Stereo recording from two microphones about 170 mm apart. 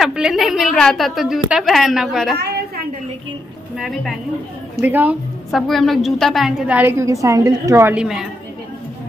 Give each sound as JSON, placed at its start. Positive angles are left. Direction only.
{"t": 0.0, "sound": "a woman's voice", "side_deg": -5}
{"t": 2.3, "sound": "a sound", "side_deg": -70}
{"t": 3.7, "sound": "a woman's voice", "side_deg": 0}
{"t": 5.5, "sound": "a woman's voice", "side_deg": 0}